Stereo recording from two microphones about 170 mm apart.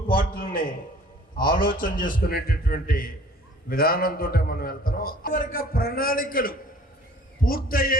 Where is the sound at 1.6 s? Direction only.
55° left (ahead or behind).